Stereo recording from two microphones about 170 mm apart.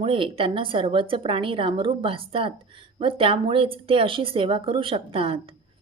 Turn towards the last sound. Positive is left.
turn(degrees=-30)  # may be behind; listen again after turning